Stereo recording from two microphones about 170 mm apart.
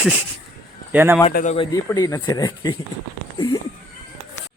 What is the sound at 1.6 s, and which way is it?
Speech, 20° left (ahead or behind).